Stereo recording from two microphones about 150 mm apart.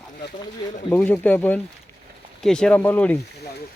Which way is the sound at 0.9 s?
10° left (ahead or behind).